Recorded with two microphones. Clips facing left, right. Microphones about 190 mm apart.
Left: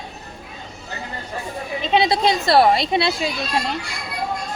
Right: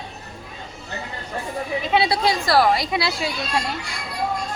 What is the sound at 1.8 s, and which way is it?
Speech, 20° left (ahead or behind).